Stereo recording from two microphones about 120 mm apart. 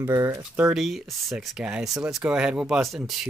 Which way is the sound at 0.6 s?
Centre (ahead or behind).